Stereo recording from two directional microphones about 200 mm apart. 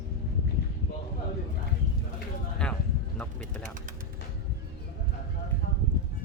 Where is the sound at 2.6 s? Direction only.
5° left (ahead or behind).